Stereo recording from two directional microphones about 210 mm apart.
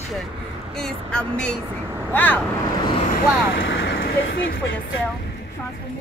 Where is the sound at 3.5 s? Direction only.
65° left (ahead or behind).